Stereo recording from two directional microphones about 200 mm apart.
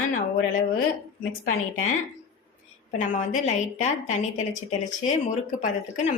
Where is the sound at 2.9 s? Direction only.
35° left (ahead or behind).